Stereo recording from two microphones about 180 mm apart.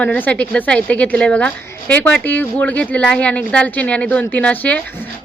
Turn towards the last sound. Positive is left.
turn(degrees=10)  # may be behind; listen again after turning